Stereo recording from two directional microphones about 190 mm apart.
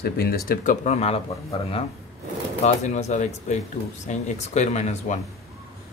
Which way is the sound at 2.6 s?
35° left (ahead or behind).